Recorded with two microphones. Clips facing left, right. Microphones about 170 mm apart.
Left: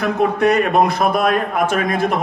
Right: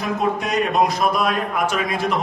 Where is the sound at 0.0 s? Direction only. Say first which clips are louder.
Left 6 dB; 60° left (ahead or behind).